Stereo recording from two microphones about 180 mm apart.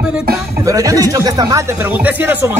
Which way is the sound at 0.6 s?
20° right (ahead or behind).